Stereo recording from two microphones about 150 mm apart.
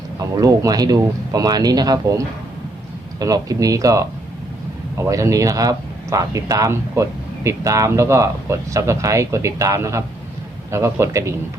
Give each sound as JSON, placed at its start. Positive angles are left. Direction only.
{"t": 0.3, "sound": "speech", "side_deg": -25}